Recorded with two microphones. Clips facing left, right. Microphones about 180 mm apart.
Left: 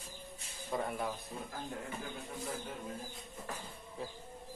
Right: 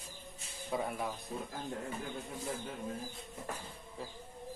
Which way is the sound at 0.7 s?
Centre (ahead or behind).